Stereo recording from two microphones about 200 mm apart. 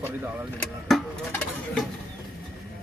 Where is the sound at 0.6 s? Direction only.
5° left (ahead or behind).